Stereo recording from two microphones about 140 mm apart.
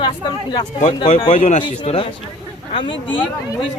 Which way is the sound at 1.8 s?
40° left (ahead or behind).